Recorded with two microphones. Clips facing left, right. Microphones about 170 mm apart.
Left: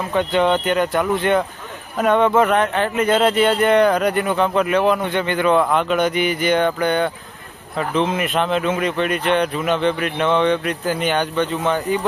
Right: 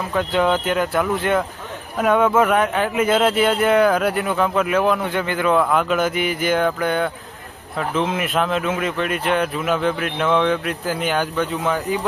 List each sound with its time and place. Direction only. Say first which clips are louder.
0.1 s speech: left 2 dB; centre (ahead or behind)